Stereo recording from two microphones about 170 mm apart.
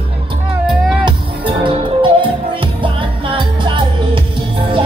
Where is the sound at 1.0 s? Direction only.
30° right (ahead or behind).